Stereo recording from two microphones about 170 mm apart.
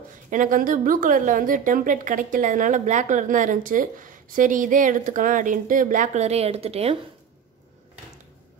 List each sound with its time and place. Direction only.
0.3 s a woman's voice: 50° right (ahead or behind)